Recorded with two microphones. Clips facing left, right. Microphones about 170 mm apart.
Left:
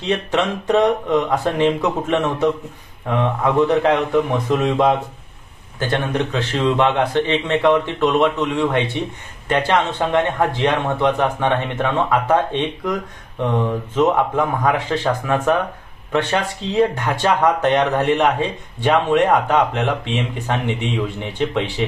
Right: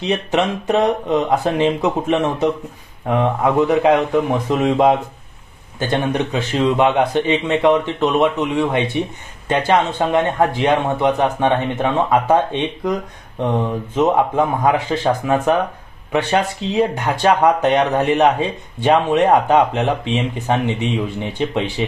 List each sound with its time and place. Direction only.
0.0 s a man's voice: 15° right (ahead or behind)
21.2 s a man's voice: 15° right (ahead or behind)